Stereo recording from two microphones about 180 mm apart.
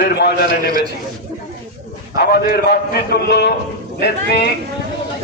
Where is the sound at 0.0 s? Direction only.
65° left (ahead or behind).